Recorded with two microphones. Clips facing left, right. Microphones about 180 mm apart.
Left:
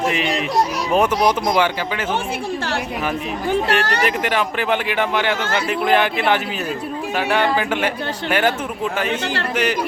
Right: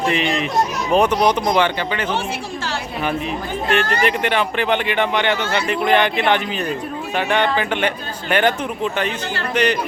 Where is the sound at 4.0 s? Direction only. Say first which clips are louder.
Right 1 dB; 5° left (ahead or behind).